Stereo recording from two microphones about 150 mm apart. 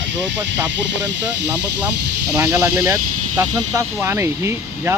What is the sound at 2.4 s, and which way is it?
Speech, 20° right (ahead or behind).